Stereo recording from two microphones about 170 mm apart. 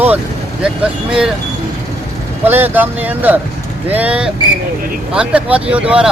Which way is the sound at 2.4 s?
10° right (ahead or behind).